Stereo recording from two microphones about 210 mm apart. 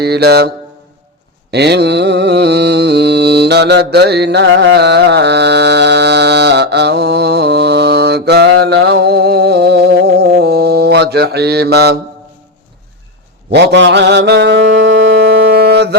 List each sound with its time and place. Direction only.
0.0 s mantra: 50° right (ahead or behind)
13.5 s speech: 55° right (ahead or behind)
15.5 s mantra: 50° right (ahead or behind)